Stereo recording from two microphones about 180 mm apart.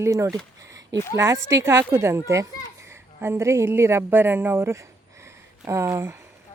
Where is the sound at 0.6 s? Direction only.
15° right (ahead or behind).